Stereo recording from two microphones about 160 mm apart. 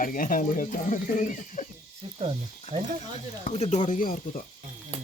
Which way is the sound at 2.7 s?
50° left (ahead or behind).